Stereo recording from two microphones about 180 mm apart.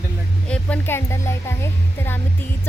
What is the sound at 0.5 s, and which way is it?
Speech, 10° left (ahead or behind).